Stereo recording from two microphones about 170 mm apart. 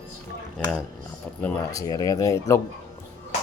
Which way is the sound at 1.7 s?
20° left (ahead or behind).